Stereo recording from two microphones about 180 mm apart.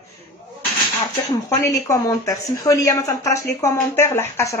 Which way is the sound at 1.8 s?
20° left (ahead or behind).